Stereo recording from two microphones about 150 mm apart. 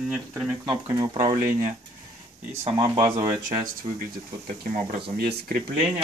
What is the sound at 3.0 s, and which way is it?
Speech, 20° right (ahead or behind).